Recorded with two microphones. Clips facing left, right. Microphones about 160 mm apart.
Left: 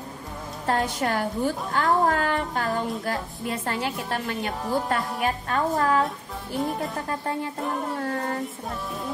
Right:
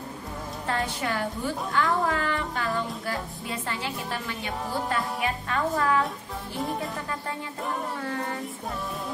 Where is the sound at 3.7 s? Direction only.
50° left (ahead or behind).